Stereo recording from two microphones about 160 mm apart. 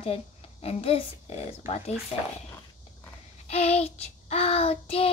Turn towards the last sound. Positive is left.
turn(degrees=35)  # may be behind; listen again after turning